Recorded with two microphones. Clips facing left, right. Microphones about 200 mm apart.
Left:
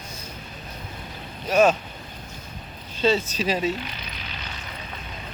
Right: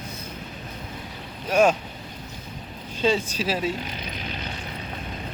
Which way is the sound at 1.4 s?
10° right (ahead or behind).